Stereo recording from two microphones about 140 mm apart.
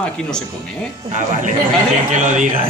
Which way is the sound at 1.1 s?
60° right (ahead or behind).